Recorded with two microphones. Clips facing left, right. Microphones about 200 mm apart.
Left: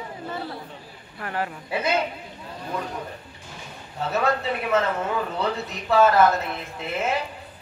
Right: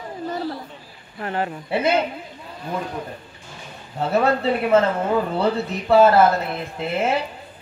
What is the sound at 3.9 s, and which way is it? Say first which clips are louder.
Speech: right 5 dB; 30° right (ahead or behind).